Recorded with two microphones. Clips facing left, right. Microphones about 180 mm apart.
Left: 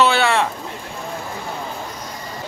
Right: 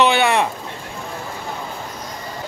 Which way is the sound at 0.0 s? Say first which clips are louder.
Right 1 dB; 15° right (ahead or behind).